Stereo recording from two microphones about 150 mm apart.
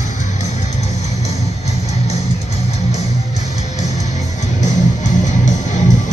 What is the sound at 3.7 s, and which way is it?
Music, 50° left (ahead or behind).